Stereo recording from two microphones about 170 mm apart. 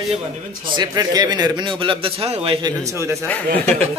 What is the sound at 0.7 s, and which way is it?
A man's voice, 25° right (ahead or behind).